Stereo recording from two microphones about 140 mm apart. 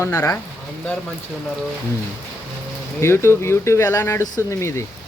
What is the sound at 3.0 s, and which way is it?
Speech, 20° left (ahead or behind).